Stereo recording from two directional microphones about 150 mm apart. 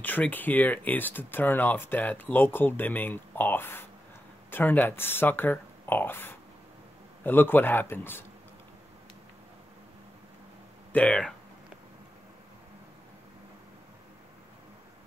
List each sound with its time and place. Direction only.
0.0 s speech: 10° left (ahead or behind)
10.9 s speech: 5° left (ahead or behind)